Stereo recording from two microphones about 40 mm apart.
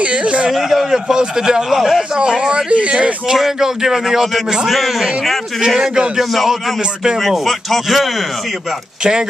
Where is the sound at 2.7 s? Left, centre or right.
Right.